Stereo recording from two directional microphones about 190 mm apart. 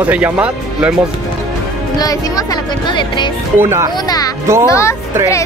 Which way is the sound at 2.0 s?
20° left (ahead or behind).